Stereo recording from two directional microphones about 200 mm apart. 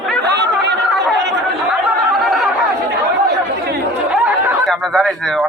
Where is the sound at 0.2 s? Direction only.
55° right (ahead or behind).